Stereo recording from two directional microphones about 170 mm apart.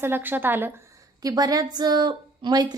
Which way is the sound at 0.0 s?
10° right (ahead or behind).